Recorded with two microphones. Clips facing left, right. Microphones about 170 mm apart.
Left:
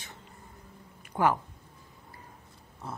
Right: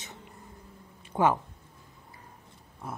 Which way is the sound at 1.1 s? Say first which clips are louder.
Right 1 dB; 20° right (ahead or behind).